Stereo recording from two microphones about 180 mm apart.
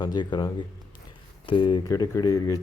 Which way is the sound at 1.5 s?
30° left (ahead or behind).